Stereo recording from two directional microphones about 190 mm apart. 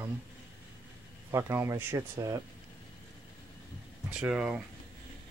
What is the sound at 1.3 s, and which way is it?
Speech, 15° right (ahead or behind).